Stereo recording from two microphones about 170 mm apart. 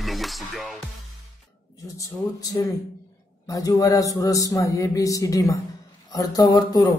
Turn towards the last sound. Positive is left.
turn(degrees=25)  # may be behind; listen again after turning